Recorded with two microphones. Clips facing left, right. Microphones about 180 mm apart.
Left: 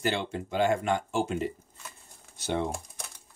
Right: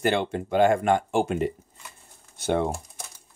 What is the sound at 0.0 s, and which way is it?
Speech, 55° right (ahead or behind).